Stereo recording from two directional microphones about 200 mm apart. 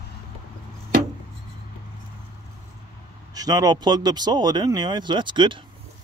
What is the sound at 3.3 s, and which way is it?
Speech, 20° right (ahead or behind).